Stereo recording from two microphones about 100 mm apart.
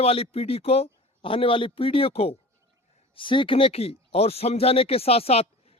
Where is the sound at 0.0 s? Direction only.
80° left.